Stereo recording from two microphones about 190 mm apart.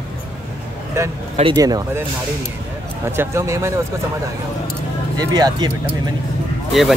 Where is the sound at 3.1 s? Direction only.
15° right (ahead or behind).